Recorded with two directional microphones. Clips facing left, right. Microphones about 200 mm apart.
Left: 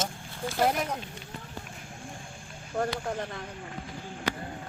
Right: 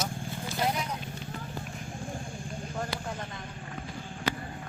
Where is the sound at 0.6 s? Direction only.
50° left (ahead or behind).